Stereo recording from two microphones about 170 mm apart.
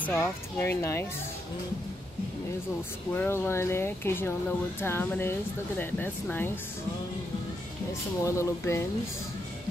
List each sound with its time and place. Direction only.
0.0 s speech: 10° left (ahead or behind)
3.1 s speech: 15° left (ahead or behind)
8.2 s speech: 15° left (ahead or behind)